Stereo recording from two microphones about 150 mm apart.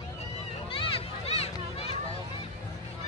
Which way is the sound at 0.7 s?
40° left (ahead or behind).